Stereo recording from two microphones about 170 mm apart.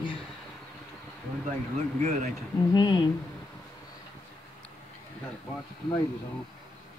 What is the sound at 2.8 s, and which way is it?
Speech, 25° left (ahead or behind).